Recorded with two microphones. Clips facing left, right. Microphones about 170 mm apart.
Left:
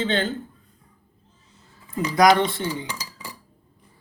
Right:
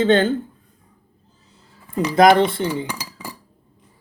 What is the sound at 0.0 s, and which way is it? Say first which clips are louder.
Speech: right 8 dB; 50° right (ahead or behind).